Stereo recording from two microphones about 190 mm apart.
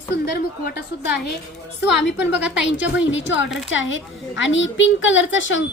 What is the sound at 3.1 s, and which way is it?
A woman's voice, 75° left (ahead or behind).